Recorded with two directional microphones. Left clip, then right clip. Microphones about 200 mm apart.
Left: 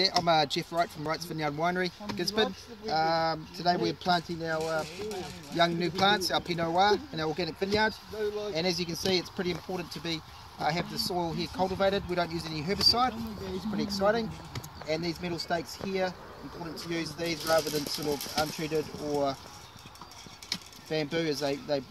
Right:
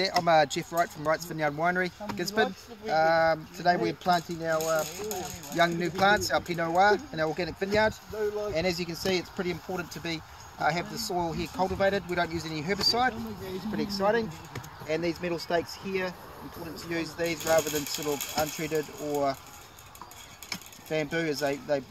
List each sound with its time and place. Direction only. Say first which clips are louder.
0.0 s speech: right 2 dB; 5° right (ahead or behind); by 13.1 s 15° left (ahead or behind)
13.7 s speech: right 1 dB; 30° left (ahead or behind)
16.7 s speech: right 2 dB; 20° left (ahead or behind)
20.4 s coin: left 1 dB; centre (ahead or behind)